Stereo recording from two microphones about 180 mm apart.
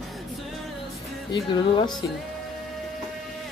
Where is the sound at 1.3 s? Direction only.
25° left (ahead or behind).